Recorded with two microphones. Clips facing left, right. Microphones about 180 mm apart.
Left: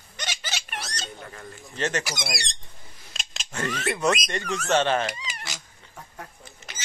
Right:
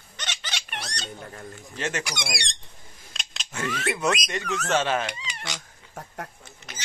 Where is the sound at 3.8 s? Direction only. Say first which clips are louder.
Left 2 dB; centre (ahead or behind).